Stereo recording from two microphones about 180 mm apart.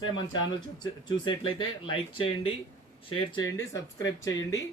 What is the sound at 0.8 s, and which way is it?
Speech, 25° left (ahead or behind).